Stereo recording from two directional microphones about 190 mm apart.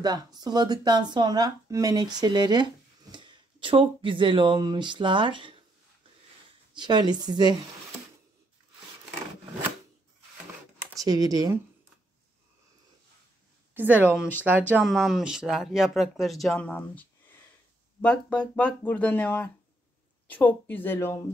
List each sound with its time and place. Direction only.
0.0 s speech: 20° right (ahead or behind)
6.7 s speech: 25° right (ahead or behind)
11.0 s speech: 20° right (ahead or behind)
13.7 s a woman's voice: 10° right (ahead or behind); by 21.2 s 10° left (ahead or behind)